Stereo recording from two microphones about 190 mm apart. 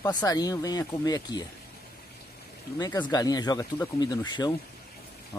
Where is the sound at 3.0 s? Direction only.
20° left (ahead or behind).